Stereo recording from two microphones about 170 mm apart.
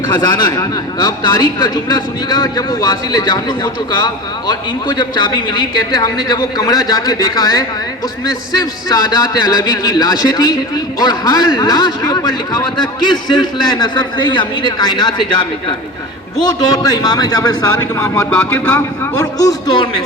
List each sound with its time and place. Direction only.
0.1 s a man's voice: 25° left (ahead or behind)
8.9 s a man's voice: 25° left (ahead or behind)